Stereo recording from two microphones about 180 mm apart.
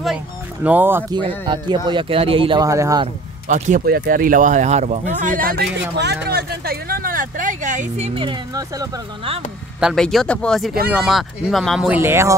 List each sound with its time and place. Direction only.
0.7 s speech: 10° right (ahead or behind)
1.1 s speech: 25° right (ahead or behind)
3.4 s speech: 45° right (ahead or behind)
3.8 s speech: 60° right (ahead or behind)
8.1 s speech: 25° right (ahead or behind)
9.8 s speech: centre (ahead or behind)